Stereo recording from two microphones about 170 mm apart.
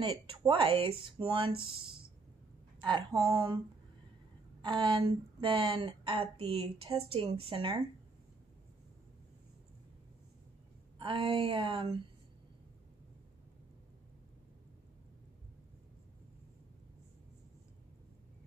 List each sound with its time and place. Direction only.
0.0 s speech: 30° right (ahead or behind)
4.6 s speech: 30° right (ahead or behind)
11.0 s speech: 30° right (ahead or behind)